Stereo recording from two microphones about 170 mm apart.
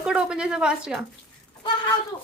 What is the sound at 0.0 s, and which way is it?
A woman's voice, 5° right (ahead or behind).